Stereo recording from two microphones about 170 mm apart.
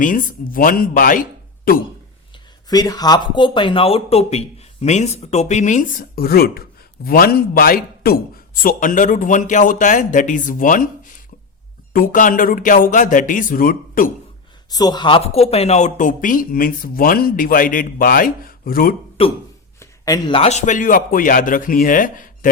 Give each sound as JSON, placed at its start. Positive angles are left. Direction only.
{"t": 0.0, "sound": "speech", "side_deg": 55}
{"t": 2.6, "sound": "speech", "side_deg": 20}
{"t": 8.6, "sound": "a man's voice", "side_deg": 50}
{"t": 11.9, "sound": "a man's voice", "side_deg": 55}
{"t": 14.7, "sound": "speech", "side_deg": 25}
{"t": 19.8, "sound": "a man's voice", "side_deg": 20}